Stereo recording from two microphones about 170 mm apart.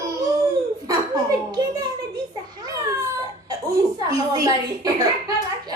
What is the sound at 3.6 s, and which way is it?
A woman's voice, 20° right (ahead or behind).